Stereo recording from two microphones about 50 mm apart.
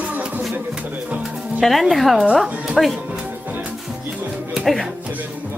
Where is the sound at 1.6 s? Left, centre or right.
Centre.